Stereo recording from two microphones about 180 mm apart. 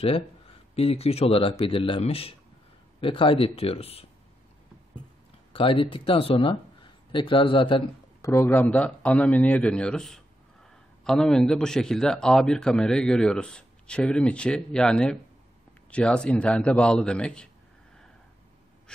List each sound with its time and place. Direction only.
0.7 s speech: 35° left (ahead or behind)
5.5 s speech: 30° left (ahead or behind)
8.2 s a man's voice: 15° left (ahead or behind)